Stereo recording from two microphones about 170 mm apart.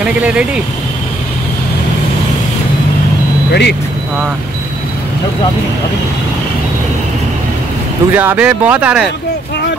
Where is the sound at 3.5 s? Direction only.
80° left.